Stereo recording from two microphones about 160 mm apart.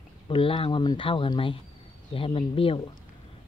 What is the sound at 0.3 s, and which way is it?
Speech, 35° left (ahead or behind).